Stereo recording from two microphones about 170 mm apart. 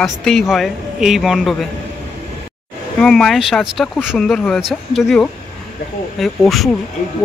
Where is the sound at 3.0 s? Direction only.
5° left (ahead or behind).